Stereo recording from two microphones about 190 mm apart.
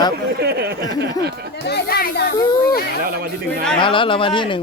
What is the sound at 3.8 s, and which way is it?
Speech, 25° left (ahead or behind).